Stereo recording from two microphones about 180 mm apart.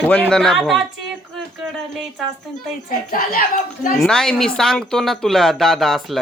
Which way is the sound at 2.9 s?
50° left (ahead or behind).